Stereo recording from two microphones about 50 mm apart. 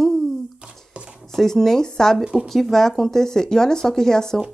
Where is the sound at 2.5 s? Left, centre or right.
Centre.